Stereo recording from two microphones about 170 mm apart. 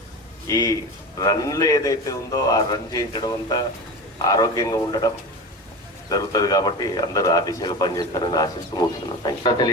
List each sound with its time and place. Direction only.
0.4 s speech: 20° left (ahead or behind)